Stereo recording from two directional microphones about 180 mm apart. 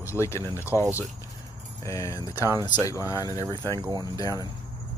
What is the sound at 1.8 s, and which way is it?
Speech, 15° left (ahead or behind).